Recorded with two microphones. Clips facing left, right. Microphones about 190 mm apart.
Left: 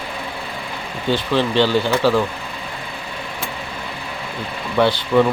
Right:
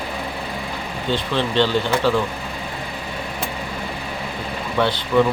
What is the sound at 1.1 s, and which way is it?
Speech, 10° left (ahead or behind).